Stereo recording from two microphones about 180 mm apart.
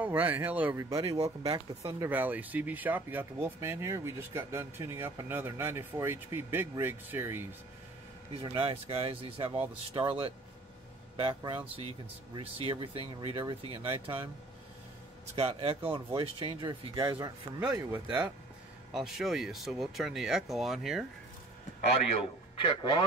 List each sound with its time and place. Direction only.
0.0 s speech: 10° right (ahead or behind)
8.3 s speech: 30° right (ahead or behind)
15.3 s speech: 30° right (ahead or behind)
18.9 s speech: centre (ahead or behind)
22.6 s a man's voice: 25° left (ahead or behind)